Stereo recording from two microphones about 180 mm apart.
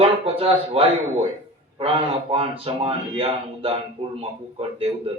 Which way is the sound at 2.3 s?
30° right (ahead or behind).